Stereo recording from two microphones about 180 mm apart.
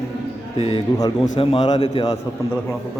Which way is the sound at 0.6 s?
30° left (ahead or behind).